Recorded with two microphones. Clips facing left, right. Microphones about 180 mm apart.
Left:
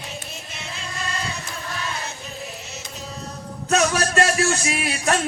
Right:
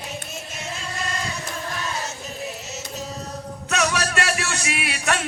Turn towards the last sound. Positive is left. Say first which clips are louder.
# left 3 dB
turn(degrees=35)  # may be behind; listen again after turning